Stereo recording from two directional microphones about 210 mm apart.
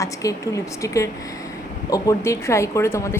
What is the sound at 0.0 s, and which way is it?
A woman's voice, 15° left (ahead or behind).